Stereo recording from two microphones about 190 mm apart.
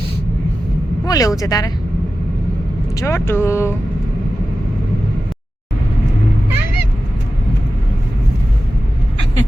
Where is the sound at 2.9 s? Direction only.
15° left (ahead or behind).